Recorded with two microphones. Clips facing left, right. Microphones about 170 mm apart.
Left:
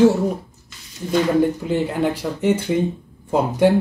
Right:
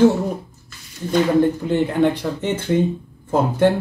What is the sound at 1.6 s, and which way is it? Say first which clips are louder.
Speech: right 3 dB; 10° left (ahead or behind).